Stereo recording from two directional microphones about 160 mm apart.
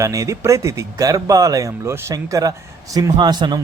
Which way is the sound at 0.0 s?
20° right (ahead or behind).